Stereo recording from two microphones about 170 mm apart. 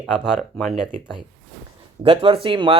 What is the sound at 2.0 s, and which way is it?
Speech, 35° right (ahead or behind).